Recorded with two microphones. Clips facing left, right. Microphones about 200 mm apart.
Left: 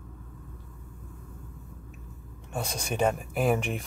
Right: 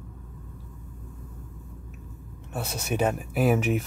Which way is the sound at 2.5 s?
5° right (ahead or behind).